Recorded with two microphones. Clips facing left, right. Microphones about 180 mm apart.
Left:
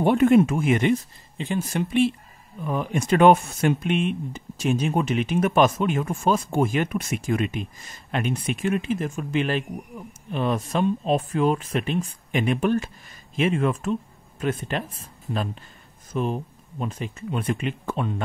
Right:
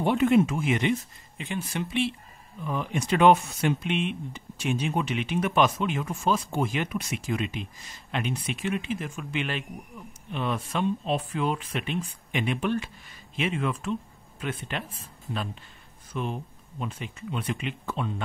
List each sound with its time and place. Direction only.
0.0 s speech: 50° left (ahead or behind)
16.1 s speech: 40° left (ahead or behind)